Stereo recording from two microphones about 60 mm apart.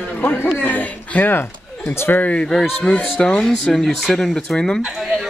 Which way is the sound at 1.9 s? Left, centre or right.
Left.